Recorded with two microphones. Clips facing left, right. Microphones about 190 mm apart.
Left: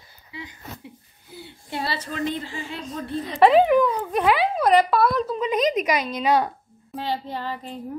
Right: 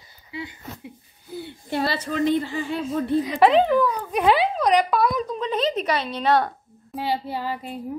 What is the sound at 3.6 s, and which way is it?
Speech, 20° left (ahead or behind).